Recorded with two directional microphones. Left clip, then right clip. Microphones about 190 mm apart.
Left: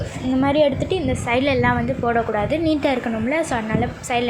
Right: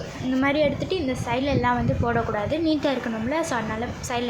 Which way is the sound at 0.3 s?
10° left (ahead or behind).